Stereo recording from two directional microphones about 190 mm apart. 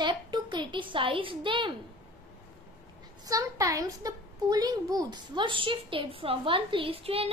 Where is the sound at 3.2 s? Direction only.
20° right (ahead or behind).